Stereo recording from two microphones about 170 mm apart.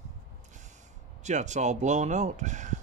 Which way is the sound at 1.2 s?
45° right (ahead or behind).